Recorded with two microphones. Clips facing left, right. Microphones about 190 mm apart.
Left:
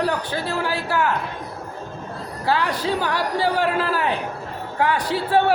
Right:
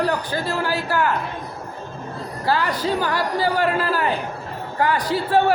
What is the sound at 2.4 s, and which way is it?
Speech, 5° right (ahead or behind).